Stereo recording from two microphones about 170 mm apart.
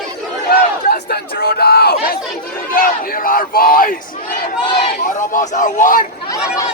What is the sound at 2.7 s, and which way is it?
Speech, 55° left (ahead or behind).